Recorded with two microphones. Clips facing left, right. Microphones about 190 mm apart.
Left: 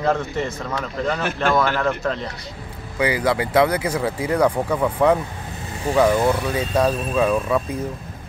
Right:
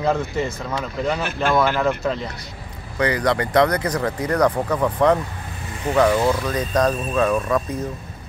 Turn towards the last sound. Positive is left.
turn(degrees=10)  # may be behind; listen again after turning